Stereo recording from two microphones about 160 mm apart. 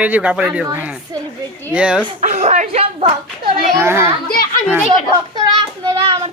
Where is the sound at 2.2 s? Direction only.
50° right (ahead or behind).